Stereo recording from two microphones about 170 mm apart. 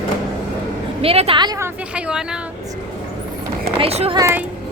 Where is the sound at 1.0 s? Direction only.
35° right (ahead or behind).